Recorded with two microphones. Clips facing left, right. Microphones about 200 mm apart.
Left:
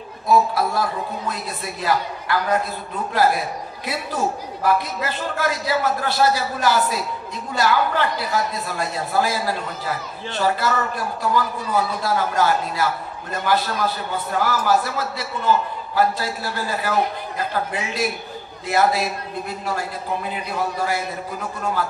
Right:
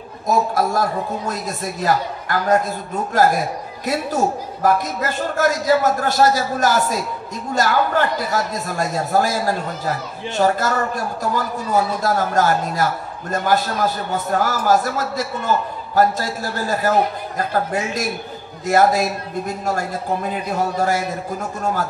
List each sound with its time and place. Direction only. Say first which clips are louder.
0.3 s a man's voice: even; 45° right (ahead or behind)
18.7 s a man's voice: right 4 dB; 45° right (ahead or behind)